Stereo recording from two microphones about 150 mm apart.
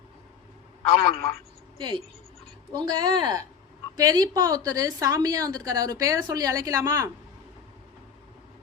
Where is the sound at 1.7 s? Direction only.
30° right (ahead or behind).